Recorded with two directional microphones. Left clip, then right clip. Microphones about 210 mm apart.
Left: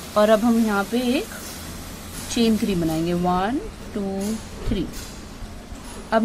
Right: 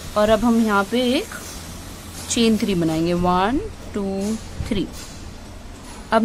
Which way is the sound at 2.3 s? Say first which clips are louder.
Right 2 dB; 10° right (ahead or behind).